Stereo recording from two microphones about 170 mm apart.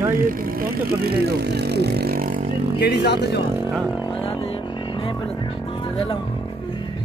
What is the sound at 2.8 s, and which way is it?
Speech, 75° left (ahead or behind).